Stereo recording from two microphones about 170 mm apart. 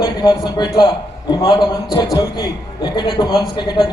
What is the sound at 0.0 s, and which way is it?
A man's voice, 25° left (ahead or behind).